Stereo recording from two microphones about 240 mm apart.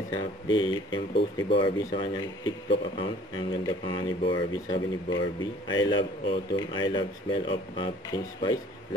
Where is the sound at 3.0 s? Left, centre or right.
Centre.